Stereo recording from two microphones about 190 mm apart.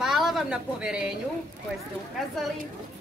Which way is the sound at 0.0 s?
Centre (ahead or behind).